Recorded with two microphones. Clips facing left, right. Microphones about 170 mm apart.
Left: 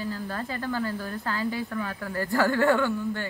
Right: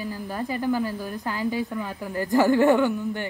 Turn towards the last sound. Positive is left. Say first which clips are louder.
# right 3 dB
turn(degrees=-15)  # may be behind; listen again after turning